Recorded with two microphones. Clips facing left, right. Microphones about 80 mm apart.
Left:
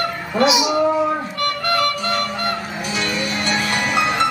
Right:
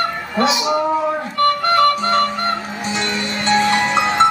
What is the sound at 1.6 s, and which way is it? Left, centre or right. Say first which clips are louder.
Music: right 5 dB; right.